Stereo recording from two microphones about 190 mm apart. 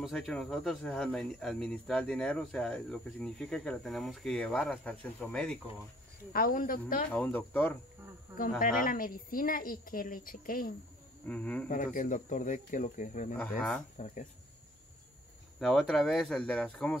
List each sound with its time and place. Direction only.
0.0 s speech: centre (ahead or behind)
6.3 s a woman's voice: 50° left (ahead or behind)
7.1 s speech: 10° left (ahead or behind)
8.4 s a woman's voice: 45° left (ahead or behind)
11.2 s speech: 5° left (ahead or behind)
11.7 s a woman's voice: 45° left (ahead or behind)
13.4 s speech: 5° left (ahead or behind)
13.9 s speech: 40° left (ahead or behind)
15.6 s speech: centre (ahead or behind)